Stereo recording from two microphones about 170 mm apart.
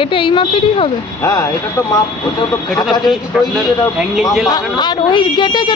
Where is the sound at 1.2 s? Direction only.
15° left (ahead or behind).